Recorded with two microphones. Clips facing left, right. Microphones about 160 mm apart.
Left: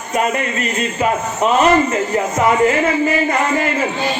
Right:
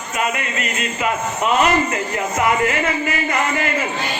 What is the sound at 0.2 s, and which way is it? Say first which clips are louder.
A man's voice: left 4 dB; 35° left (ahead or behind).